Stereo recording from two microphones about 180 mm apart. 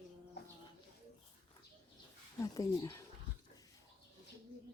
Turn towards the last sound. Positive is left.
turn(degrees=20)  # may be behind; listen again after turning